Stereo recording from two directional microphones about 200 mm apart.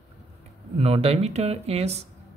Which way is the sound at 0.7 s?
30° right (ahead or behind).